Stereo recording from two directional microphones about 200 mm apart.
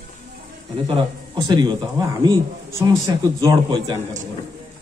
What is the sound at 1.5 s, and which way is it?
A man's voice, 20° right (ahead or behind).